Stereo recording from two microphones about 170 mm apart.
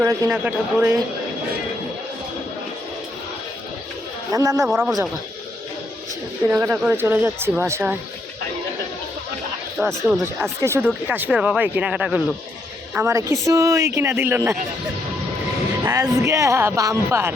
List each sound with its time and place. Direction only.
0.0 s speech: 20° right (ahead or behind)
4.3 s a man's voice: 20° right (ahead or behind)
6.5 s speech: 15° right (ahead or behind)
9.7 s speech: 5° right (ahead or behind)
10.6 s speech: 15° right (ahead or behind)
15.8 s speech: 20° right (ahead or behind)